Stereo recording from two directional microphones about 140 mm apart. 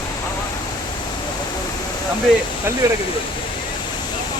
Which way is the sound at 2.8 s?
25° right (ahead or behind).